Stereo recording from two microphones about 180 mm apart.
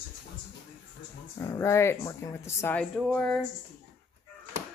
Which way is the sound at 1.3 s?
15° left (ahead or behind).